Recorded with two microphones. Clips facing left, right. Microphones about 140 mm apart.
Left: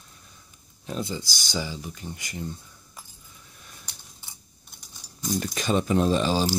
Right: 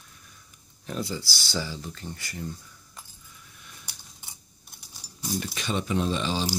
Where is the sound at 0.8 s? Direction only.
20° left (ahead or behind).